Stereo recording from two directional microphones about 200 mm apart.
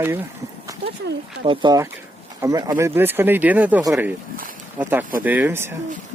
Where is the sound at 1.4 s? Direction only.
25° right (ahead or behind).